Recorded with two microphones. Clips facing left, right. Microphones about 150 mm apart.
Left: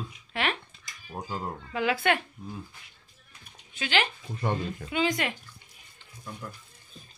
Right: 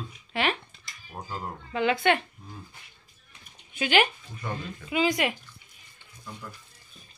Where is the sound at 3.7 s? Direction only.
15° right (ahead or behind).